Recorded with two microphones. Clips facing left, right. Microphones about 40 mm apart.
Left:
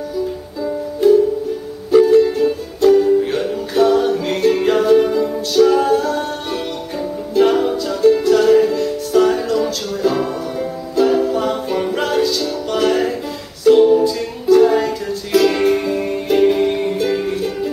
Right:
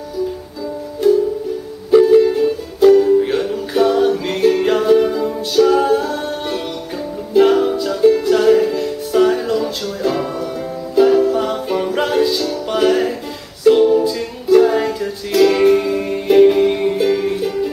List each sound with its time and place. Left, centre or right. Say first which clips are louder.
1.0 s music: left 2 dB; centre
12.2 s music: right 1 dB; centre